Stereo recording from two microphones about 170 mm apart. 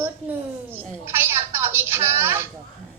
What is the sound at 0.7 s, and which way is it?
A woman's voice, 15° right (ahead or behind).